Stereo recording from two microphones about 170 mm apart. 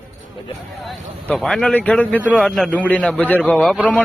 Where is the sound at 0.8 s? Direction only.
Centre (ahead or behind).